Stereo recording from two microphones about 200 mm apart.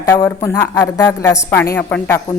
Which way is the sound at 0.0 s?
15° left (ahead or behind).